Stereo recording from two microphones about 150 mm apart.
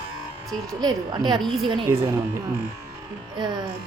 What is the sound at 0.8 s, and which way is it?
Speech, 30° right (ahead or behind).